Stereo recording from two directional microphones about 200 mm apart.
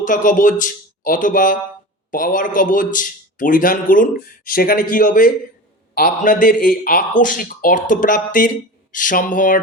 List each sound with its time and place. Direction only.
0.0 s a man's voice: 40° left (ahead or behind)